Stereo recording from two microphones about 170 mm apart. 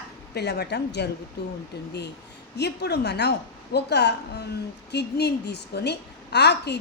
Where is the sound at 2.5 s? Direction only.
80° left.